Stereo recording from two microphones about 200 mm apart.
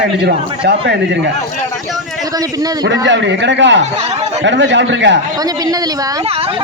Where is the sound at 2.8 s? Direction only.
60° right (ahead or behind).